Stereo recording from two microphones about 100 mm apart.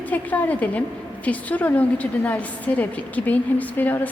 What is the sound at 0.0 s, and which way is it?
A woman's voice, 15° left (ahead or behind).